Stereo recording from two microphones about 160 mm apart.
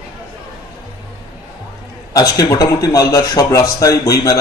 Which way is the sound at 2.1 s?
20° left (ahead or behind).